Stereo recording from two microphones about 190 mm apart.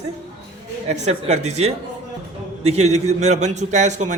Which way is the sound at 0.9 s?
35° right (ahead or behind).